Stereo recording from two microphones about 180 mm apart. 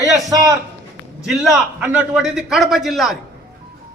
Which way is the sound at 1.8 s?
5° right (ahead or behind).